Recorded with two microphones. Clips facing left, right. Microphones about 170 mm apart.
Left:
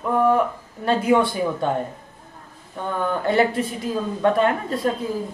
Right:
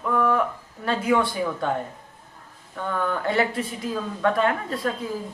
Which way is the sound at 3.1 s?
25° left (ahead or behind).